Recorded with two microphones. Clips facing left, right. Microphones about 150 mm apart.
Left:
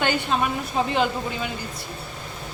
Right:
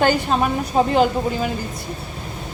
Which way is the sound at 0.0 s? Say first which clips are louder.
Right 5 dB; 40° right (ahead or behind).